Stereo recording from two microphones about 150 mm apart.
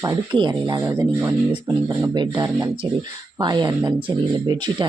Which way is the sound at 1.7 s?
35° right (ahead or behind).